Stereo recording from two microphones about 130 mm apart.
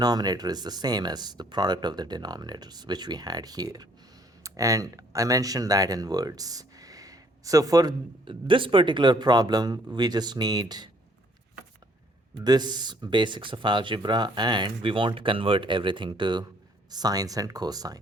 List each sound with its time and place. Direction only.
0.0 s speech: 30° right (ahead or behind)
12.4 s speech: 30° right (ahead or behind)